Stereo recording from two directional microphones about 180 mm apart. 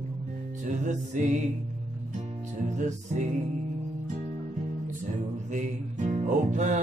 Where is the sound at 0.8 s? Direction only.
40° right (ahead or behind).